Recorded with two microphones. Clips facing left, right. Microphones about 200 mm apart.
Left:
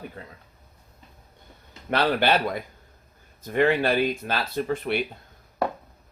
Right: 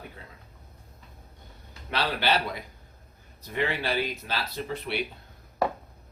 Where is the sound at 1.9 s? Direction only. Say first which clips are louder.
Left 5 dB; 55° left (ahead or behind).